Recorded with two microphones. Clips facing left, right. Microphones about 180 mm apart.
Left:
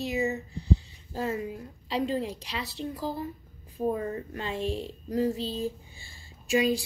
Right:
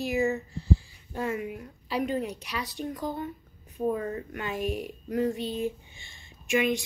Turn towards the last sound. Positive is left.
turn(degrees=35)  # may be behind; listen again after turning